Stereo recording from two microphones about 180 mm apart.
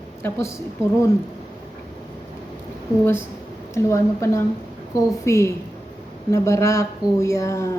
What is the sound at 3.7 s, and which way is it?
Speech, 15° left (ahead or behind).